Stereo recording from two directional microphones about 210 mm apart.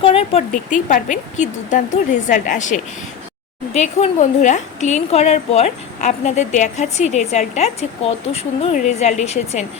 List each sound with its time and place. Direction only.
0.0 s a woman's voice: 30° left (ahead or behind)